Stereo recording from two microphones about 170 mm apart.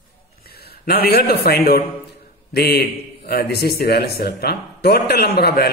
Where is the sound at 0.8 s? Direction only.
65° left (ahead or behind).